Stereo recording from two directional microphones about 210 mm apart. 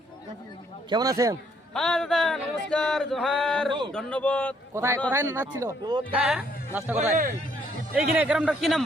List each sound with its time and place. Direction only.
0.9 s speech: 15° right (ahead or behind)
1.7 s male singing: centre (ahead or behind)
3.7 s speech: 20° right (ahead or behind)
3.9 s male singing: 5° left (ahead or behind)
4.7 s a man's voice: 15° right (ahead or behind)
6.9 s speech: 30° right (ahead or behind)
7.9 s male singing: 5° right (ahead or behind)